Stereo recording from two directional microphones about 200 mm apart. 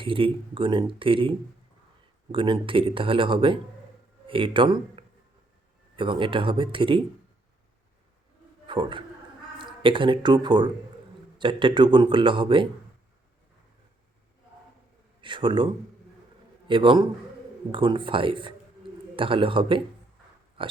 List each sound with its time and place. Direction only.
0.0 s speech: 25° right (ahead or behind)
8.6 s a man's voice: 25° right (ahead or behind)
15.2 s a man's voice: 25° right (ahead or behind)
20.6 s pig: 25° right (ahead or behind)